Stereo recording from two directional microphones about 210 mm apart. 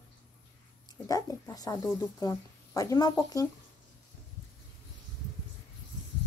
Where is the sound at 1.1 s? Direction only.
15° left (ahead or behind).